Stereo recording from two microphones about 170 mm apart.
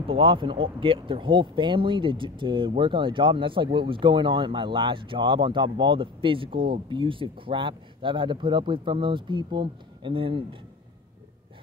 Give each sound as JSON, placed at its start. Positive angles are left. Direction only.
{"t": 0.0, "sound": "speech", "side_deg": -30}